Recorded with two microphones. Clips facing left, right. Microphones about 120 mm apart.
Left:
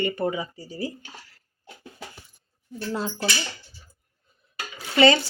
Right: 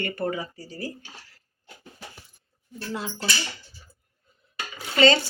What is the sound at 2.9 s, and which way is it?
Speech, 35° left (ahead or behind).